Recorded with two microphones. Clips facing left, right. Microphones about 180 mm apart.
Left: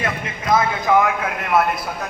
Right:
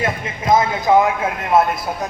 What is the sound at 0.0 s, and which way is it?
A man's voice, 25° right (ahead or behind).